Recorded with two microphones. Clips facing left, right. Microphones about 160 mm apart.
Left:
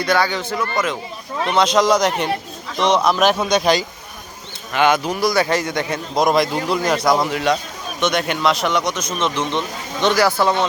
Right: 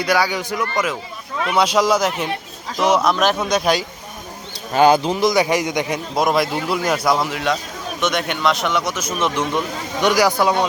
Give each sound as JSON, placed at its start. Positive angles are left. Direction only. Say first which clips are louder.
{"t": 0.0, "sound": "speech", "louder": "even", "side_deg": -10}
{"t": 4.7, "sound": "a man's voice", "louder": "right 3 dB", "side_deg": -35}
{"t": 6.1, "sound": "speech", "louder": "left 2 dB", "side_deg": -5}